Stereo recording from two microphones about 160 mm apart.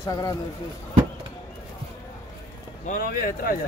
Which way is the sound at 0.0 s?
20° left (ahead or behind).